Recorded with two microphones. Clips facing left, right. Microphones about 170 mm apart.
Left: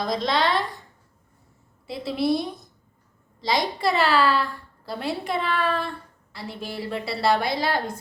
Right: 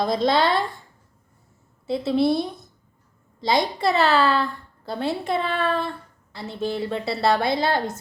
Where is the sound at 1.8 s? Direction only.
25° right (ahead or behind).